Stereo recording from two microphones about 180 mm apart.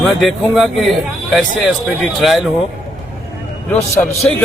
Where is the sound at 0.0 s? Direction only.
Centre (ahead or behind).